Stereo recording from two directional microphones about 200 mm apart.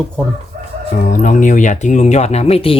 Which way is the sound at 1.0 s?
40° left (ahead or behind).